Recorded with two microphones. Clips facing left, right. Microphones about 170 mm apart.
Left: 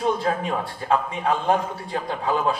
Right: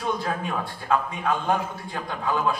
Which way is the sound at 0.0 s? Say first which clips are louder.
Left 4 dB; 35° left (ahead or behind).